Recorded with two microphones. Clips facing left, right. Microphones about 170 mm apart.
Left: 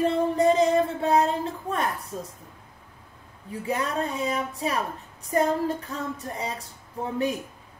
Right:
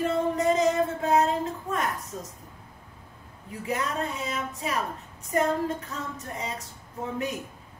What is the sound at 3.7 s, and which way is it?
A woman's voice, 30° left (ahead or behind).